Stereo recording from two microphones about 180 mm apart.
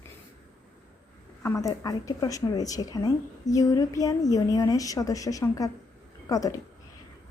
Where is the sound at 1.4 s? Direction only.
15° left (ahead or behind).